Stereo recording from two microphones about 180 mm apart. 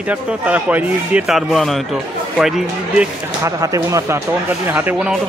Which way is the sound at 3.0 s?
15° right (ahead or behind).